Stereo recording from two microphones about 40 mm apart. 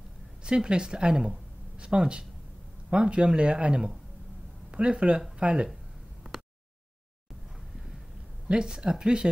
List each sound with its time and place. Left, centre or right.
0.4 s a woman's voice: right
8.5 s a woman's voice: right